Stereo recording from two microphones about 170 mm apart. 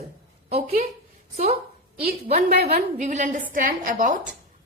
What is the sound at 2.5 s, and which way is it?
A woman's voice, 65° right (ahead or behind).